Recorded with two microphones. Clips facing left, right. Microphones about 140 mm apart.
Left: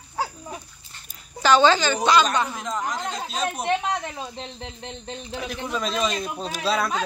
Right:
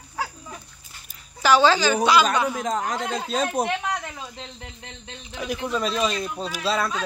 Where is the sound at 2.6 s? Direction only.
50° right (ahead or behind).